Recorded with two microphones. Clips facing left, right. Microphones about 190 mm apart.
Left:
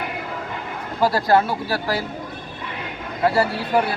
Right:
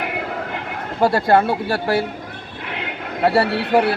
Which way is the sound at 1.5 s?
60° right (ahead or behind).